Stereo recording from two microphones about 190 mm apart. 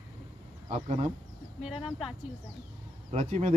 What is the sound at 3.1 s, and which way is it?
Speech, 35° right (ahead or behind).